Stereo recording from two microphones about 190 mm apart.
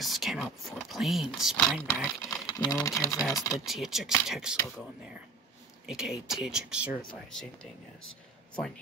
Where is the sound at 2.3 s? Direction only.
20° left (ahead or behind).